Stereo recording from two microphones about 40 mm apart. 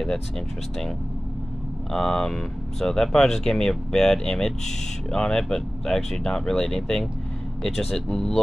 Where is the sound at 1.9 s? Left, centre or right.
Centre.